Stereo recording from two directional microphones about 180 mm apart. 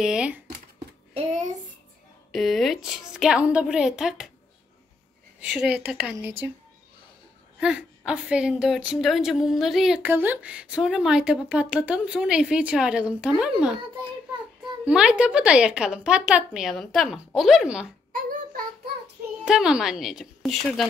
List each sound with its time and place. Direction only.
0.0 s a woman's voice: 5° right (ahead or behind)
1.1 s child singing: 40° right (ahead or behind)
2.3 s a woman's voice: centre (ahead or behind)
5.4 s speech: 5° right (ahead or behind)
7.6 s a woman's voice: 5° right (ahead or behind)
14.9 s a woman's voice: 5° right (ahead or behind)
18.1 s child singing: 50° right (ahead or behind)
19.4 s a woman's voice: 5° right (ahead or behind)